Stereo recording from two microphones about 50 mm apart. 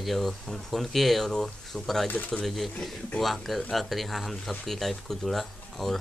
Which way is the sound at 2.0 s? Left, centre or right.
Left.